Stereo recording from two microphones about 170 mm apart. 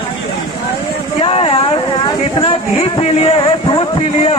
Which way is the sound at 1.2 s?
35° left (ahead or behind).